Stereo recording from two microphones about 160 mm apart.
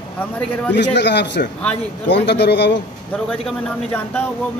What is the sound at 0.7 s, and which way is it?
A man's voice, 90° left.